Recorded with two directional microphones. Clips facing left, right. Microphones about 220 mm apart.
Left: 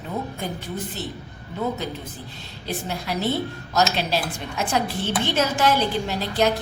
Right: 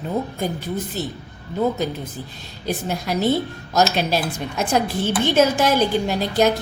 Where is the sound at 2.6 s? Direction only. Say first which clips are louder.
Right 4 dB; 45° right (ahead or behind).